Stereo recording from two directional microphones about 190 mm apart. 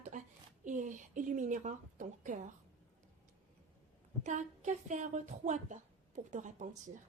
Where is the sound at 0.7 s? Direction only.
40° right (ahead or behind).